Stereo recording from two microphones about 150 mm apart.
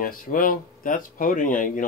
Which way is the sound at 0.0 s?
70° left (ahead or behind).